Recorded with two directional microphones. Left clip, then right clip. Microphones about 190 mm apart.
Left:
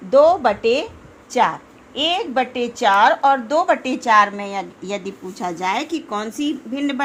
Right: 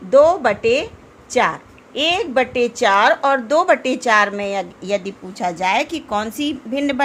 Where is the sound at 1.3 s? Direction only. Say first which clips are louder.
Even; 10° right (ahead or behind).